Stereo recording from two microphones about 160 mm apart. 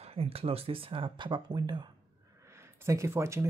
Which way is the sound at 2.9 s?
15° right (ahead or behind).